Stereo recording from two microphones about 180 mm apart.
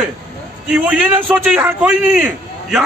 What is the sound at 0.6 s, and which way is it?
A man's voice, 5° right (ahead or behind).